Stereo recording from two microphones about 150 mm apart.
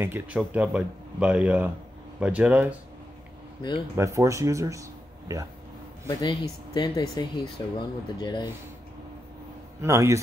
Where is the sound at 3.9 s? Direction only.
20° right (ahead or behind).